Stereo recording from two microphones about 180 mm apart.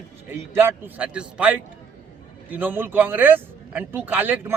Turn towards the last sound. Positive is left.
turn(degrees=-10)  # may be behind; listen again after turning